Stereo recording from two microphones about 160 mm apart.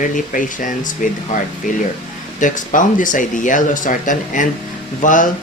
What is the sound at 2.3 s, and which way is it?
Speech, 55° left (ahead or behind).